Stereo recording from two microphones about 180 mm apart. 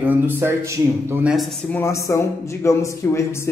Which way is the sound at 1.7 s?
15° left (ahead or behind).